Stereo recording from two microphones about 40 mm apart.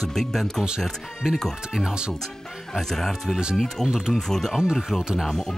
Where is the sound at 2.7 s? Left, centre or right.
Centre.